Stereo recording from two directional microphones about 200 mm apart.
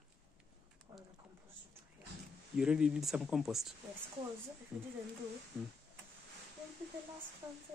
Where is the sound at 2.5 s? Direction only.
5° right (ahead or behind).